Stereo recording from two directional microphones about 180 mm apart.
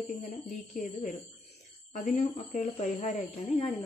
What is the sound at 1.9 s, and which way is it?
A woman's voice, 45° left (ahead or behind).